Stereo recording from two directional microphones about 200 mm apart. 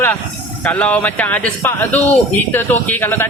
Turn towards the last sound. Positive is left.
turn(degrees=10)  # may be behind; listen again after turning